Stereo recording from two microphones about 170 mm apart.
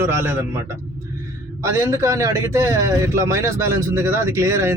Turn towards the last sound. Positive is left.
turn(degrees=-15)  # may be behind; listen again after turning